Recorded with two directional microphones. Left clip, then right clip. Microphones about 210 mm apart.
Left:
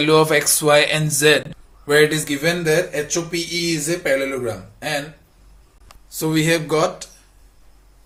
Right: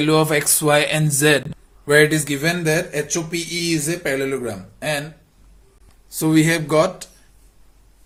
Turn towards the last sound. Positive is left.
turn(degrees=-30)  # may be behind; listen again after turning